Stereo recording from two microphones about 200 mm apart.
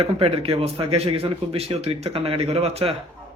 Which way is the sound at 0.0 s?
30° right (ahead or behind).